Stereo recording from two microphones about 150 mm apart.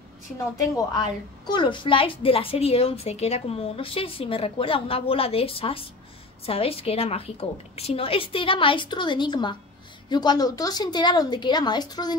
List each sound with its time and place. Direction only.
0.7 s a woman's voice: 30° left (ahead or behind)